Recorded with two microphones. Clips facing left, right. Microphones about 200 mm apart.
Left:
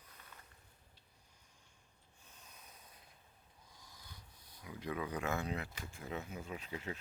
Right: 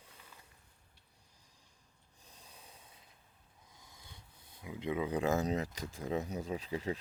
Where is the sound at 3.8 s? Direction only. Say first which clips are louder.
Right 1 dB; 25° right (ahead or behind).